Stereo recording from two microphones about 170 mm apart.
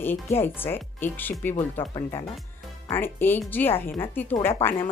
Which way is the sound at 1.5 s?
25° left (ahead or behind).